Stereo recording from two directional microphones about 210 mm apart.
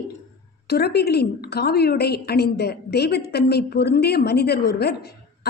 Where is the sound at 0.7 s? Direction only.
50° left (ahead or behind).